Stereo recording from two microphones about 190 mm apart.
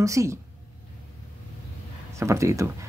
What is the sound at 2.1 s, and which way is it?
Speech, 15° right (ahead or behind).